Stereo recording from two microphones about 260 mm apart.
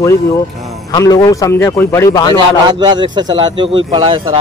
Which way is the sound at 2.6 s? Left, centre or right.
Centre.